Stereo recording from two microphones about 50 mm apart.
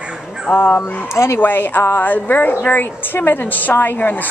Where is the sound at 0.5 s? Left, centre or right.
Left.